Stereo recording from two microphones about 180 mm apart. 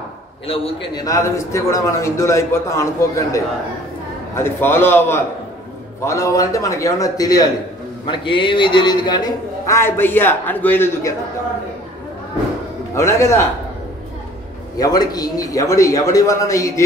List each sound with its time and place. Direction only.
0.5 s a man's voice: 20° left (ahead or behind)
12.9 s a man's voice: 15° left (ahead or behind)
14.8 s a man's voice: 20° left (ahead or behind)